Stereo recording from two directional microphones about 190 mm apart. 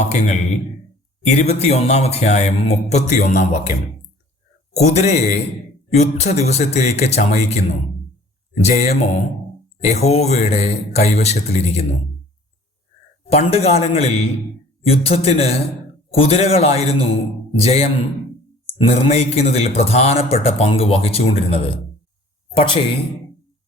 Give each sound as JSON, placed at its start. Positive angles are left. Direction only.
{"t": 0.0, "sound": "speech", "side_deg": 35}
{"t": 8.7, "sound": "speech", "side_deg": 40}
{"t": 13.3, "sound": "speech", "side_deg": 30}